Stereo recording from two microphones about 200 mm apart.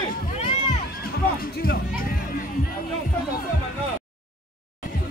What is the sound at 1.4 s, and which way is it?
Music, 45° left (ahead or behind).